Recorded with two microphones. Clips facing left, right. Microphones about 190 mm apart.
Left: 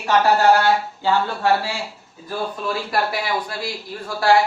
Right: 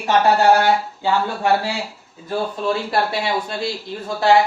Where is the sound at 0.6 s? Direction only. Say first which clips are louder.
Right 1 dB; 20° right (ahead or behind).